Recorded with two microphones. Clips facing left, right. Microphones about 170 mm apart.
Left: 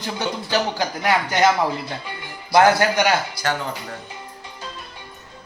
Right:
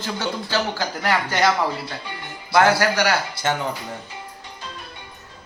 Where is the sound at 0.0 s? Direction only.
15° left (ahead or behind).